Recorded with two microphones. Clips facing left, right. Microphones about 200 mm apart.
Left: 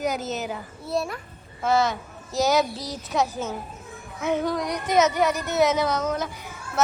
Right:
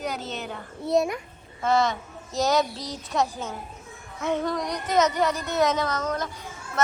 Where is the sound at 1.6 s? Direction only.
Centre (ahead or behind).